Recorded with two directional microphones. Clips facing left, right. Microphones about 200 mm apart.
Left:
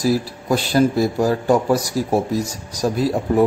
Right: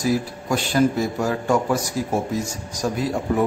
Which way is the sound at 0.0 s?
35° left (ahead or behind).